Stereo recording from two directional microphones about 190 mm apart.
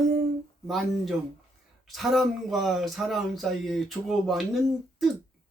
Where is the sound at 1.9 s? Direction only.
Centre (ahead or behind).